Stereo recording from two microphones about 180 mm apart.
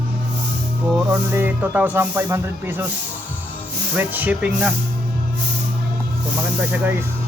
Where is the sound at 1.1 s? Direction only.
10° right (ahead or behind).